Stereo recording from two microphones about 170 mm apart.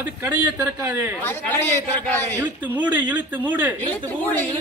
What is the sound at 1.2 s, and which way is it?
A man's voice, 10° left (ahead or behind).